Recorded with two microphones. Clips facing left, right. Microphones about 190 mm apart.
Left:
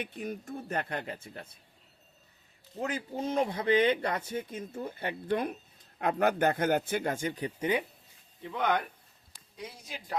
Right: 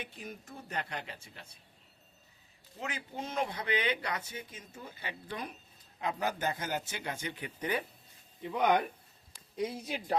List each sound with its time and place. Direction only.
0.0 s speech: 55° left (ahead or behind)
2.8 s speech: 40° left (ahead or behind)
3.2 s speech: 25° left (ahead or behind)
3.7 s speech: 50° left (ahead or behind)
7.6 s speech: 20° left (ahead or behind)
8.4 s speech: 10° right (ahead or behind)
9.8 s speech: 30° right (ahead or behind)